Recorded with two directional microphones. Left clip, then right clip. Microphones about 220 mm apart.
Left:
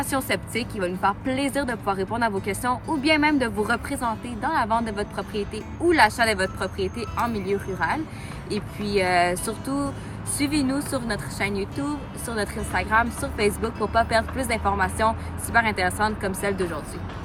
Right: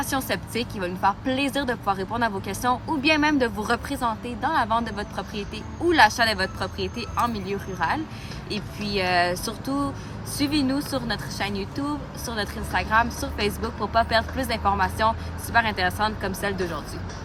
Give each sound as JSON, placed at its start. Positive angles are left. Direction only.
{"t": 0.3, "sound": "speech", "side_deg": -15}